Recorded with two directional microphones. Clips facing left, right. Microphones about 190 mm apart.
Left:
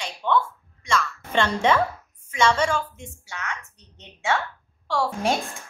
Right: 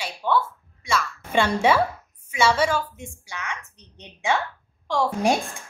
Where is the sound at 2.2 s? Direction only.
10° right (ahead or behind).